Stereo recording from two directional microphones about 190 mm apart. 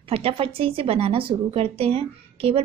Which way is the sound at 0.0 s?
30° right (ahead or behind).